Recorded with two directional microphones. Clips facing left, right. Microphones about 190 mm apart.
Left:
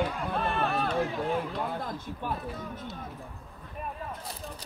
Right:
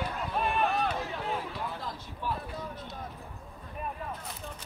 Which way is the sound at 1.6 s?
50° left (ahead or behind).